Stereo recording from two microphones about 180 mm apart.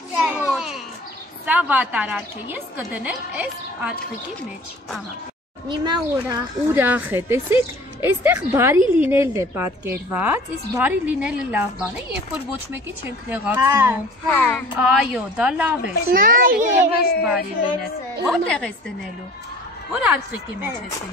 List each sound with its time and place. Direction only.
0.1 s children playing: 5° right (ahead or behind)
1.4 s a woman's voice: 10° right (ahead or behind)
5.7 s speech: 20° right (ahead or behind)
6.7 s a woman's voice: 10° right (ahead or behind)
14.3 s speech: 10° left (ahead or behind)
14.8 s a woman's voice: 5° right (ahead or behind)
16.1 s a child's voice: 50° right (ahead or behind)
17.2 s speech: 5° right (ahead or behind)
19.9 s a woman's voice: 5° right (ahead or behind)